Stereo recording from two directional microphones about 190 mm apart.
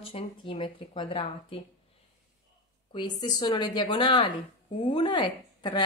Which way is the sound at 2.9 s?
25° left (ahead or behind).